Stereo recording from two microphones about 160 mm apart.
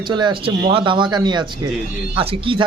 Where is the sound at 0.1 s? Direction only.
30° right (ahead or behind).